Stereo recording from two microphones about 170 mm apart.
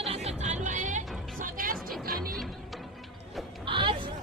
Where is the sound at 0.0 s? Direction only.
35° right (ahead or behind); by 2.4 s 60° right (ahead or behind).